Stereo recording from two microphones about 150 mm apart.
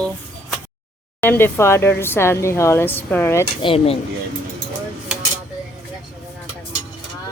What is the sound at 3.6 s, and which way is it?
Speech, 40° left (ahead or behind).